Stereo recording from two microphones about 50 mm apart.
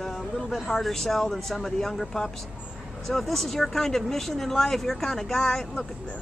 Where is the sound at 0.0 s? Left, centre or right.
Centre.